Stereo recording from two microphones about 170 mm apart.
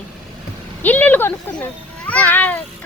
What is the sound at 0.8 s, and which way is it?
Speech, 10° left (ahead or behind).